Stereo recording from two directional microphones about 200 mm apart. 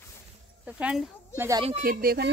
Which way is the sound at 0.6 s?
5° right (ahead or behind).